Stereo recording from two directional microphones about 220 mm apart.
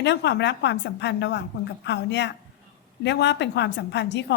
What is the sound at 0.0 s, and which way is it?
A woman's voice, 50° left (ahead or behind).